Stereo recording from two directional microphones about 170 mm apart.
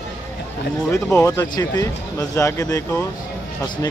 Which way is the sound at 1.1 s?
15° left (ahead or behind).